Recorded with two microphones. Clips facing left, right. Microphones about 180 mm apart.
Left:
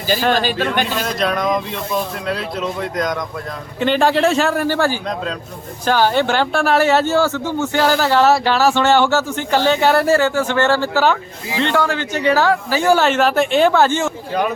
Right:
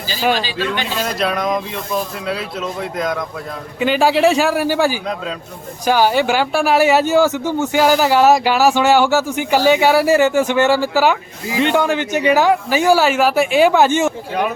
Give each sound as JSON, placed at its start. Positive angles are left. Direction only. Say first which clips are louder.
{"t": 0.2, "sound": "speech", "louder": "right 4 dB", "side_deg": -10}
{"t": 0.4, "sound": "speech", "louder": "left 3 dB", "side_deg": 50}
{"t": 1.0, "sound": "speech", "louder": "even", "side_deg": -5}